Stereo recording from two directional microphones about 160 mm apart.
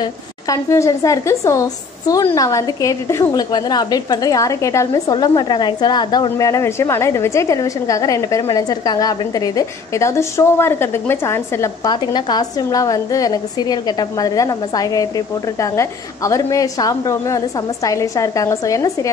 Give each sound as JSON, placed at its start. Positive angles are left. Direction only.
{"t": 0.0, "sound": "a woman's voice", "side_deg": 20}